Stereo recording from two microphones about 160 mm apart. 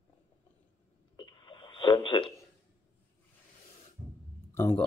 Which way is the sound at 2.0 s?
30° left (ahead or behind).